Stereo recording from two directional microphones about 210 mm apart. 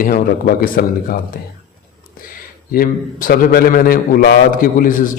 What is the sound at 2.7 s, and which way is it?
A man's voice, 45° left (ahead or behind).